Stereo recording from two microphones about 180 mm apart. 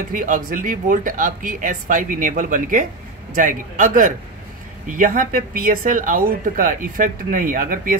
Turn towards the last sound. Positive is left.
turn(degrees=-50)  # may be behind; listen again after turning